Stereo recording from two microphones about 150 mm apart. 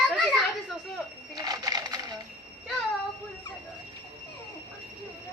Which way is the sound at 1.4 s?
25° right (ahead or behind).